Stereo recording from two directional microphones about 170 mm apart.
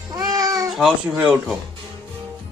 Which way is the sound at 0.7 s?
Centre (ahead or behind).